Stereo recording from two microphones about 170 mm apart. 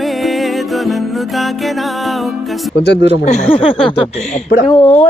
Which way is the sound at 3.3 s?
35° left (ahead or behind).